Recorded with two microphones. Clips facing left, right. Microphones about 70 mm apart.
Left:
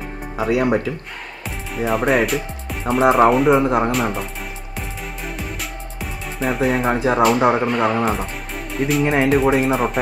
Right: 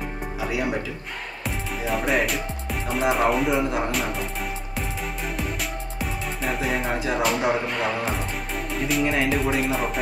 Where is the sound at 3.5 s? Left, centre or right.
Left.